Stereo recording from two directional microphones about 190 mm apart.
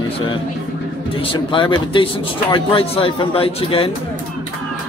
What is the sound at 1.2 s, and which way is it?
Speech, 25° left (ahead or behind).